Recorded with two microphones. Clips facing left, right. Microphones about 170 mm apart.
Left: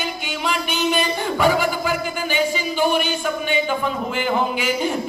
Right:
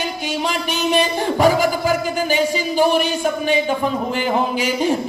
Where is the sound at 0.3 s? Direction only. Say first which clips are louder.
Right 2 dB; 40° right (ahead or behind).